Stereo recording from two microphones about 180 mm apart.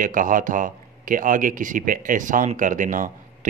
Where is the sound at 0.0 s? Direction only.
45° right (ahead or behind).